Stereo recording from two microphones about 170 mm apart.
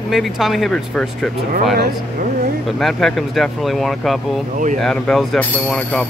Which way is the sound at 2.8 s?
Centre (ahead or behind).